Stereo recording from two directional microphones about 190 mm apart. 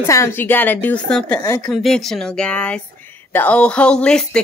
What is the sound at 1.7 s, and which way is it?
A woman's voice, centre (ahead or behind).